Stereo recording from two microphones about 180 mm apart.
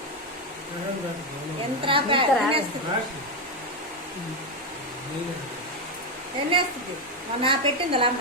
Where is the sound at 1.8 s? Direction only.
30° right (ahead or behind).